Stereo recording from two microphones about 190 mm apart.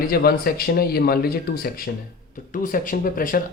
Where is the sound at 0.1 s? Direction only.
55° left (ahead or behind).